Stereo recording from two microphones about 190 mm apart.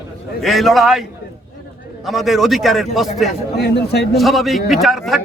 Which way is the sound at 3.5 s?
60° left (ahead or behind).